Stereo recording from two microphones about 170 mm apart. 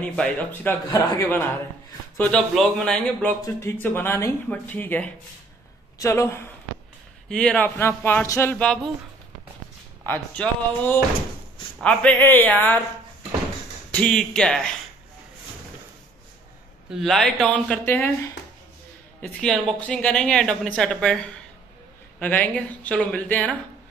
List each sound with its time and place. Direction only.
0.0 s speech: 5° left (ahead or behind)
7.2 s speech: 5° left (ahead or behind)
10.0 s speech: 10° left (ahead or behind)
13.9 s speech: 5° left (ahead or behind)
16.9 s speech: centre (ahead or behind)